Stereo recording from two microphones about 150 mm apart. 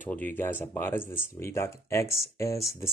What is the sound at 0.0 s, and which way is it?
Speech, 10° left (ahead or behind).